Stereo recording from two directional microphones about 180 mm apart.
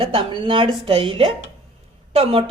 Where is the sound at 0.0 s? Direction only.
25° right (ahead or behind).